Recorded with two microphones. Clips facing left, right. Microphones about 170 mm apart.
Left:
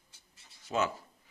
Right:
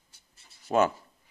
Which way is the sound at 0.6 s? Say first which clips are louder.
Right 7 dB; 55° right (ahead or behind).